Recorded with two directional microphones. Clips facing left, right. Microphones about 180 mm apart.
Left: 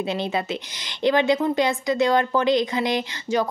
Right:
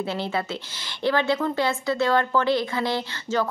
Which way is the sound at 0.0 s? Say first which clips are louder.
Left 2 dB; 20° left (ahead or behind).